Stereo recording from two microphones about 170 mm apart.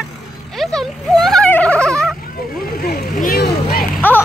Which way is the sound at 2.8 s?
60° left (ahead or behind).